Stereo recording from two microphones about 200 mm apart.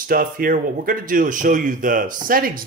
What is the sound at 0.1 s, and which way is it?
Speech, 45° right (ahead or behind).